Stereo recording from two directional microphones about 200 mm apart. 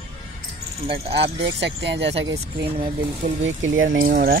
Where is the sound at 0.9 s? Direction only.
60° right (ahead or behind).